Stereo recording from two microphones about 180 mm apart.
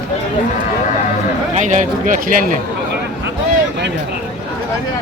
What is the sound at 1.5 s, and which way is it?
Speech, 45° right (ahead or behind).